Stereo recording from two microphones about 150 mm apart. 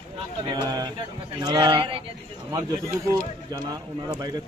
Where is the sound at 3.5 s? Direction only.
25° right (ahead or behind).